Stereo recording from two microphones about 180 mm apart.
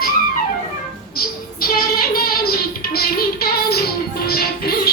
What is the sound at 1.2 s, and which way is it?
Child singing, 55° left (ahead or behind).